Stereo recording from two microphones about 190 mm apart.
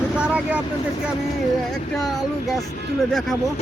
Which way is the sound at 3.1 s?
Centre (ahead or behind).